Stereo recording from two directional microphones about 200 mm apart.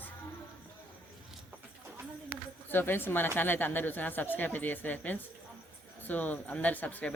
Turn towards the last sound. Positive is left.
turn(degrees=5)  # may be behind; listen again after turning